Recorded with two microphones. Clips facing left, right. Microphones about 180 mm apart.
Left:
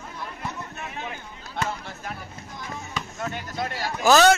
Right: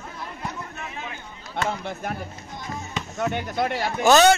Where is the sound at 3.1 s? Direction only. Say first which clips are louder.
Right 7 dB; 65° right (ahead or behind).